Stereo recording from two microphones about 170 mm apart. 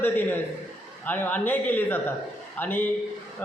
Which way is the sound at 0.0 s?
10° left (ahead or behind).